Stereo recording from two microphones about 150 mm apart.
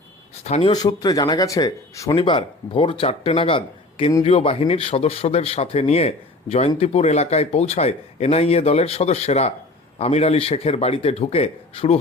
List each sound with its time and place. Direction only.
0.4 s speech: 45° left (ahead or behind)
0.7 s speech: 25° left (ahead or behind)
2.1 s speech: 35° left (ahead or behind)